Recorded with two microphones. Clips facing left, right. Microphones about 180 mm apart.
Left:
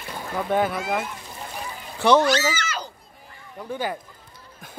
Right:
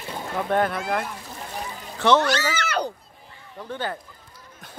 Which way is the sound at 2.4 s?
60° right (ahead or behind).